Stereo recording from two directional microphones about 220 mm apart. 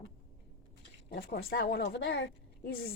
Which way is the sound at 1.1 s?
45° left (ahead or behind).